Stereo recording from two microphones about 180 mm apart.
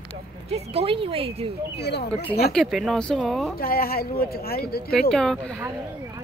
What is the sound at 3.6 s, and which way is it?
Speech, 55° left (ahead or behind).